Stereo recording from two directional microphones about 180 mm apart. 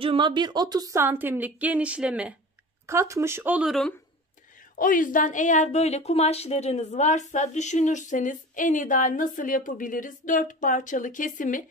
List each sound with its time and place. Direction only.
0.0 s a woman's voice: 25° right (ahead or behind); by 3.9 s centre (ahead or behind)
4.7 s a woman's voice: 50° left (ahead or behind)